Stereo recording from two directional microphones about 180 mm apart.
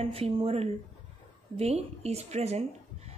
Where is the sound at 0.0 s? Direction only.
35° right (ahead or behind).